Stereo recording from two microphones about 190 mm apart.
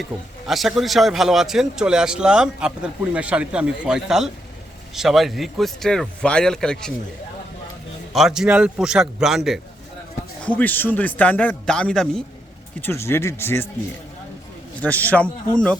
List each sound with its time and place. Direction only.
0.1 s speech: 25° right (ahead or behind)
0.4 s a man's voice: centre (ahead or behind)
8.1 s a man's voice: centre (ahead or behind)
14.8 s speech: 10° left (ahead or behind)